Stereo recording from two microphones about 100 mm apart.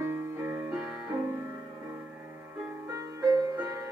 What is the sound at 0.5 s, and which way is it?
Music, 20° right (ahead or behind).